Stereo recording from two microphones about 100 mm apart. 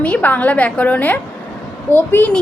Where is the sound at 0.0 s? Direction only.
15° left (ahead or behind).